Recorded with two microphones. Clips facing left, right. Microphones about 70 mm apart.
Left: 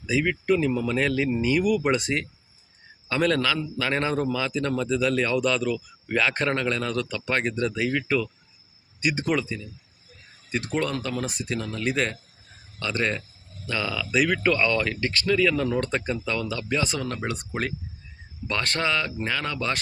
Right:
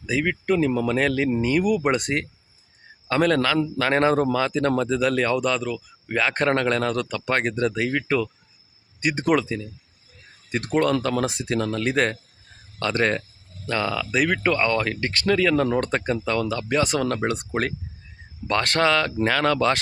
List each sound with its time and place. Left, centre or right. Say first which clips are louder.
0.0 s speech: right 1 dB; right
6.1 s a man's voice: right 1 dB; right
6.3 s speech: right 4 dB; right
7.9 s speech: right 2 dB; right
15.1 s speech: right 3 dB; right
17.5 s speech: right 4 dB; right
18.4 s speech: right 6 dB; right